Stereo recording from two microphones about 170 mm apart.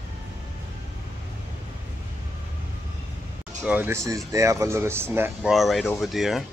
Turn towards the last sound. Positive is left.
turn(degrees=0)  # may be behind; listen again after turning